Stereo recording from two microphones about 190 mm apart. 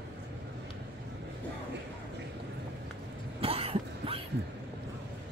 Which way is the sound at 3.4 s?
30° right (ahead or behind).